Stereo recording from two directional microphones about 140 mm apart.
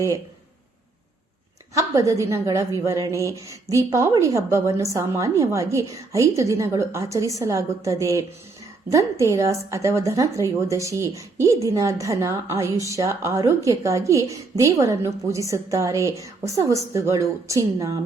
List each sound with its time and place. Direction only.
1.7 s a woman's voice: 25° right (ahead or behind)